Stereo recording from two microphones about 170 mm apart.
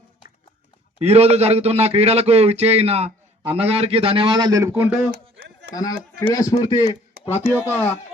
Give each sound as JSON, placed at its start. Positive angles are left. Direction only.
{"t": 0.9, "sound": "a man's voice", "side_deg": -40}
{"t": 5.7, "sound": "speech", "side_deg": 20}